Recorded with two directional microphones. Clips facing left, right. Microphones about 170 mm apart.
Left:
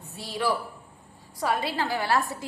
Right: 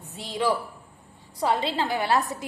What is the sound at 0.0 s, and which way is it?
A man's voice, 20° right (ahead or behind).